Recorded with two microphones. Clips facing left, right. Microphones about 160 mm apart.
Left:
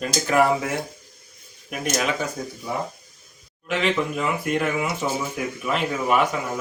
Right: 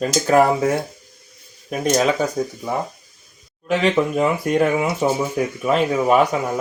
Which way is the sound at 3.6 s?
40° right (ahead or behind).